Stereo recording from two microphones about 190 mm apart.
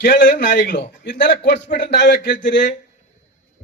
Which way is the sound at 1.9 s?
65° left (ahead or behind).